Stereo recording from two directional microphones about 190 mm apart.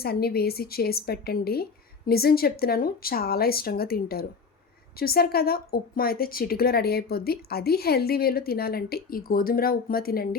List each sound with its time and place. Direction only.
0.0 s a woman's voice: 55° left (ahead or behind)